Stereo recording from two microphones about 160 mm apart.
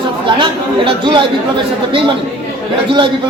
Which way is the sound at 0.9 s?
30° right (ahead or behind).